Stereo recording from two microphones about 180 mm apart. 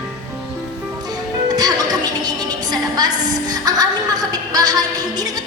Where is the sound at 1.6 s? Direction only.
20° right (ahead or behind).